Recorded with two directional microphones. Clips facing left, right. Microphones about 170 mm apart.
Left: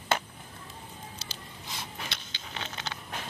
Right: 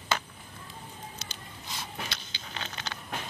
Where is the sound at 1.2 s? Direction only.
30° left (ahead or behind).